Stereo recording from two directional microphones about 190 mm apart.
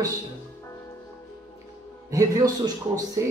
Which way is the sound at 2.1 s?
20° right (ahead or behind).